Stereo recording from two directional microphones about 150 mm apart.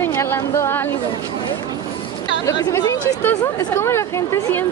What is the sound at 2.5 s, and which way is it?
A woman's voice, 20° left (ahead or behind).